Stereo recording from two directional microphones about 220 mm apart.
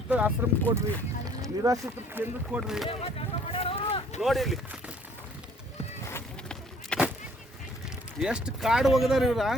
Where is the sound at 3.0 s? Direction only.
25° left (ahead or behind).